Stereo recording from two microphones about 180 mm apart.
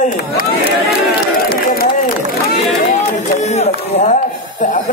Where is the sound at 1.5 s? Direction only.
55° left (ahead or behind).